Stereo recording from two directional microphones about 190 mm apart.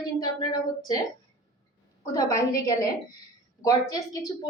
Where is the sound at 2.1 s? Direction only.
15° left (ahead or behind).